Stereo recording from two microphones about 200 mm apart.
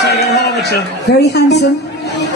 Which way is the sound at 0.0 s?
55° left (ahead or behind).